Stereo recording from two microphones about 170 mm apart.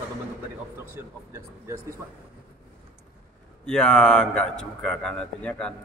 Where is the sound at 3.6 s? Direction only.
5° left (ahead or behind).